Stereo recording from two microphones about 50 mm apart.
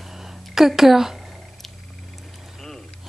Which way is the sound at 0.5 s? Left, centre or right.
Centre.